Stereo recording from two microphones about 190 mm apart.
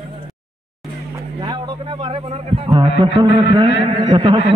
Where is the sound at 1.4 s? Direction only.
25° right (ahead or behind).